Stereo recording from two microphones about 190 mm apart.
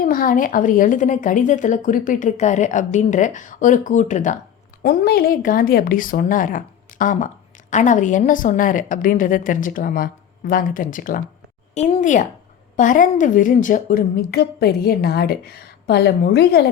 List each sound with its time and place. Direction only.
0.0 s a woman's voice: 50° left (ahead or behind)
4.8 s a woman's voice: 55° left (ahead or behind)